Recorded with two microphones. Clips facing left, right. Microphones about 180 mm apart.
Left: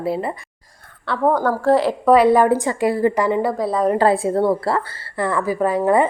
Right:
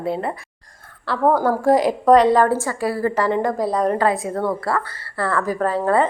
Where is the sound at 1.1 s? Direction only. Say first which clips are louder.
Even; 10° right (ahead or behind).